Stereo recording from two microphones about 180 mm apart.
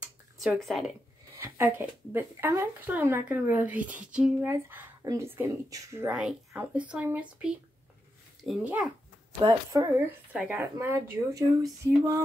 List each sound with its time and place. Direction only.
0.4 s speech: centre (ahead or behind)
1.4 s speech: 15° right (ahead or behind)
6.1 s speech: 5° right (ahead or behind)
9.4 s speech: 20° right (ahead or behind)
10.3 s speech: 10° right (ahead or behind)